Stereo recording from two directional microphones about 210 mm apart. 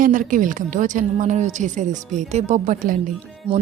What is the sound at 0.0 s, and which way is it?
A woman's voice, 40° right (ahead or behind).